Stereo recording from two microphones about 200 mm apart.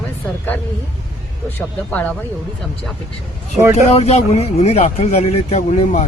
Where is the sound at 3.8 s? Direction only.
30° left (ahead or behind).